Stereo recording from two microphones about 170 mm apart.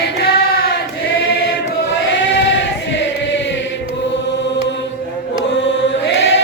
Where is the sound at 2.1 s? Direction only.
90° left.